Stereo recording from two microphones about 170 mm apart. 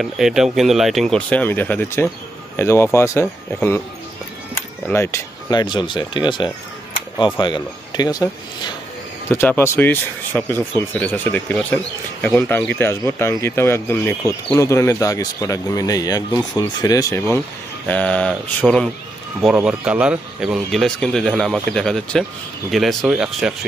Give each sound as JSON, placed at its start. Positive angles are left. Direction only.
{"t": 0.0, "sound": "speech", "side_deg": 0}
{"t": 4.8, "sound": "speech", "side_deg": 15}
{"t": 9.3, "sound": "speech", "side_deg": 15}
{"t": 19.5, "sound": "speech", "side_deg": -10}